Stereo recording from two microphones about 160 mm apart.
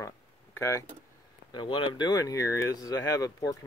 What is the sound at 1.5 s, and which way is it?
Speech, 30° left (ahead or behind).